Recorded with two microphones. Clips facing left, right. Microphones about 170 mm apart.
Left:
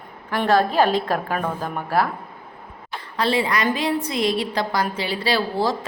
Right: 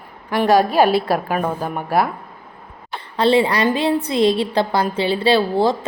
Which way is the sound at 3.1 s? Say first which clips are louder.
Right 6 dB; 30° right (ahead or behind).